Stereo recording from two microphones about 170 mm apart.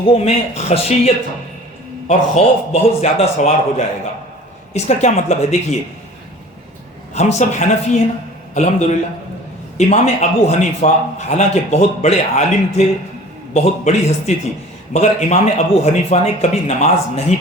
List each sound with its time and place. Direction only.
0.1 s a man's voice: 35° left (ahead or behind)
7.1 s a man's voice: 40° left (ahead or behind)